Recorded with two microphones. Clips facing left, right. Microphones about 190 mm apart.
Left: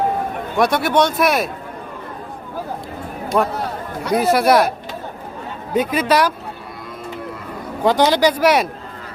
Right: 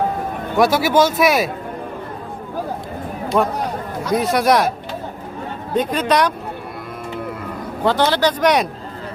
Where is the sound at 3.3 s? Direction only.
Centre (ahead or behind).